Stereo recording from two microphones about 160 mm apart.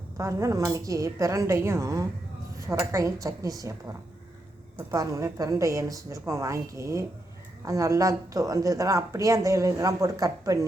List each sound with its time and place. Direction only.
0.2 s a woman's voice: 20° right (ahead or behind)